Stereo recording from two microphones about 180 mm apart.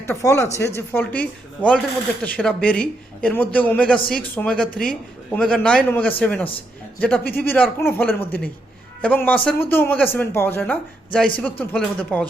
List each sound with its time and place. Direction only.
0.0 s a man's voice: 15° left (ahead or behind)